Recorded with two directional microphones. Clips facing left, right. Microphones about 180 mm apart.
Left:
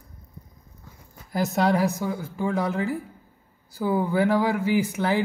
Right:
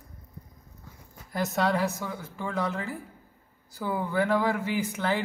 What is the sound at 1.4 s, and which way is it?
A man's voice, 15° left (ahead or behind).